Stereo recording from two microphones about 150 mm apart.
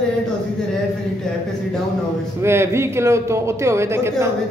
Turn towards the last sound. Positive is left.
turn(degrees=-15)  # may be behind; listen again after turning